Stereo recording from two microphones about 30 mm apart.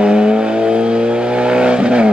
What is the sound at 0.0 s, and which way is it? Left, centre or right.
Vehicle, right.